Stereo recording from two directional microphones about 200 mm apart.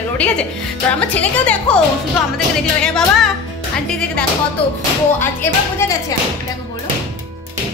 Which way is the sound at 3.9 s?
5° left (ahead or behind).